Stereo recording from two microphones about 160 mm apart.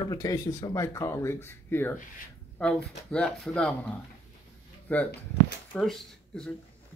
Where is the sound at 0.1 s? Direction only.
20° left (ahead or behind); by 3.7 s 5° left (ahead or behind).